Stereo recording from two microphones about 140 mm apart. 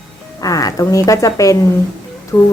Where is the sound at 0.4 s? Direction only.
25° left (ahead or behind).